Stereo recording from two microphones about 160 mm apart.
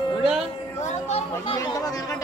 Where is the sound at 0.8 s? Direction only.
45° left (ahead or behind).